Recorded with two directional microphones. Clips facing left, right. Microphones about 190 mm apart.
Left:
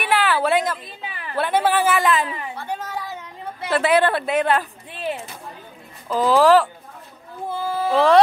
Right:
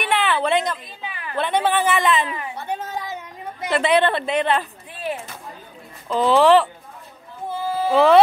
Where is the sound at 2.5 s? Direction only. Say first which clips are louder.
Right 1 dB; 20° right (ahead or behind).